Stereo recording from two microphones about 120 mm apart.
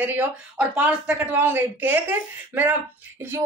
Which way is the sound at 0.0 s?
15° right (ahead or behind).